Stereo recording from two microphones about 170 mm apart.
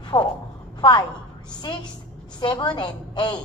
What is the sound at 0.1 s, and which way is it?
Speech, 20° left (ahead or behind).